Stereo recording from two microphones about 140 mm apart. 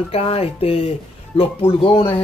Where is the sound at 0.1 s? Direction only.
45° left (ahead or behind).